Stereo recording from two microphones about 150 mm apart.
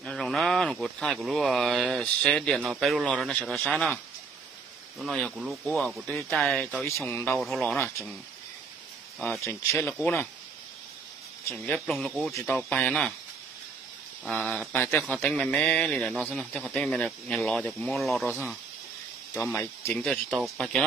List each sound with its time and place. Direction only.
0.0 s speech: centre (ahead or behind)
6.8 s speech: 15° left (ahead or behind)
7.3 s speech: centre (ahead or behind)
9.4 s speech: 20° left (ahead or behind)
11.5 s speech: centre (ahead or behind)
12.4 s speech: 10° left (ahead or behind)
14.2 s speech: centre (ahead or behind)
19.5 s speech: 10° left (ahead or behind)